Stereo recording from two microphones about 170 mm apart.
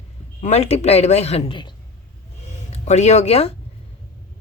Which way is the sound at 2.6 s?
40° left (ahead or behind).